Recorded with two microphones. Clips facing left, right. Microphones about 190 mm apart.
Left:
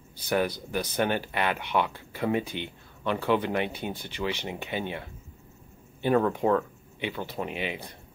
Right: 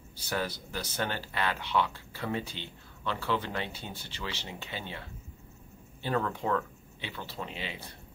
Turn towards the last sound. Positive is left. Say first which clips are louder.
# left 7 dB
turn(degrees=15)  # may be behind; listen again after turning